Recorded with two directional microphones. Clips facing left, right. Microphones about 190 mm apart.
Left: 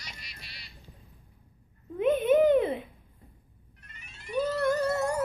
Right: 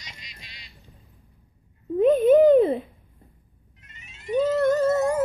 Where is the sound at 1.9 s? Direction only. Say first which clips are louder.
Right 7 dB; 35° right (ahead or behind).